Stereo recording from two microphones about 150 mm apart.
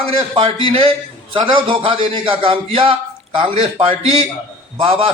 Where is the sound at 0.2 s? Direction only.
35° right (ahead or behind).